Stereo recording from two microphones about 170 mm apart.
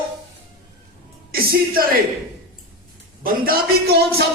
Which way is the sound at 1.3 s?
65° right (ahead or behind).